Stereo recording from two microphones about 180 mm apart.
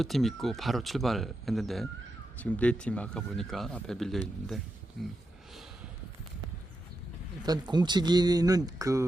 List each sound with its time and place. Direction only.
0.0 s speech: centre (ahead or behind)
7.4 s a man's voice: 25° right (ahead or behind)